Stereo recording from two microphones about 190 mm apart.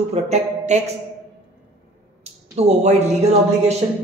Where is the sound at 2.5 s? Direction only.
35° right (ahead or behind).